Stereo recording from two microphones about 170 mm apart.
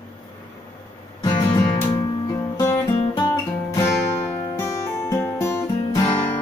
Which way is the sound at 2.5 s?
15° left (ahead or behind).